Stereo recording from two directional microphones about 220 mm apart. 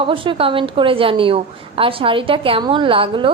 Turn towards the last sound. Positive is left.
turn(degrees=-25)  # may be behind; listen again after turning